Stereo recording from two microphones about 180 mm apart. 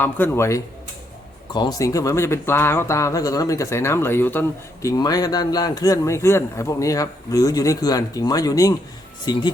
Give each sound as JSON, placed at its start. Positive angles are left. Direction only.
{"t": 0.0, "sound": "speech", "side_deg": 15}